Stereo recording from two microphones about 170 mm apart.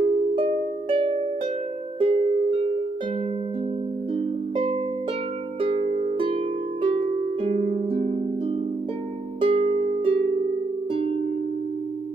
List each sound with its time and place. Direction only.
0.0 s harp: 35° right (ahead or behind)
2.0 s music: 40° right (ahead or behind)
4.1 s music: 30° right (ahead or behind)
5.6 s harp: 35° right (ahead or behind)
9.4 s harp: 35° right (ahead or behind)